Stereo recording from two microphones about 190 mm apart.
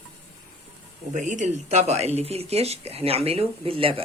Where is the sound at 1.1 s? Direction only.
40° right (ahead or behind).